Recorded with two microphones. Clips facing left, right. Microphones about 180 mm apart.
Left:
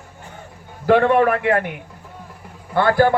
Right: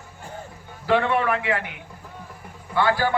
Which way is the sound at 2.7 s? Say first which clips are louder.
Left 6 dB; 55° left (ahead or behind).